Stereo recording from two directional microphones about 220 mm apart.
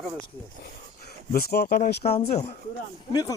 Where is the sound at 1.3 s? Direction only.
45° left (ahead or behind).